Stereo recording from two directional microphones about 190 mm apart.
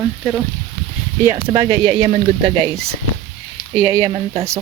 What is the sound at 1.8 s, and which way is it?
Speech, 25° right (ahead or behind).